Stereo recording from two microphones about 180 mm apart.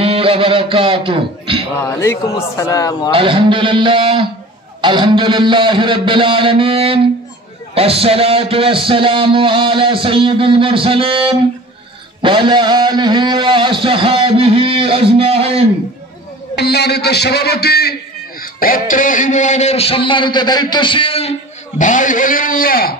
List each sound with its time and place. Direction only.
0.0 s speech: 30° right (ahead or behind)
2.0 s a man's voice: 15° left (ahead or behind)
3.1 s a man's voice: 30° right (ahead or behind)
16.5 s a man's voice: 65° left (ahead or behind)
18.4 s a man's voice: 50° left (ahead or behind)